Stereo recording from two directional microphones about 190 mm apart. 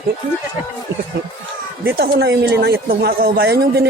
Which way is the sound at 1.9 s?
60° right (ahead or behind).